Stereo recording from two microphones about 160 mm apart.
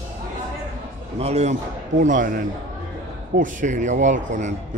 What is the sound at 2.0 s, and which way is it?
A man's voice, 55° right (ahead or behind).